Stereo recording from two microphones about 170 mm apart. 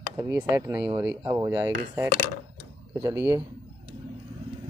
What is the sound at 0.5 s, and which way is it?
Speech, 20° right (ahead or behind).